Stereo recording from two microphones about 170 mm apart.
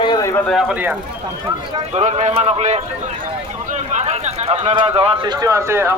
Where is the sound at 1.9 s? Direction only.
40° right (ahead or behind).